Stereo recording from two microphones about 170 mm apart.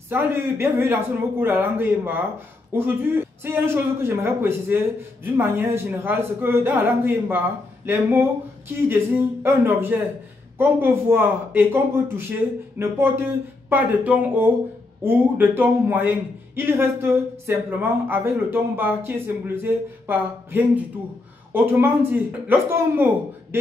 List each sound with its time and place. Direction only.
0.1 s a man's voice: 15° right (ahead or behind)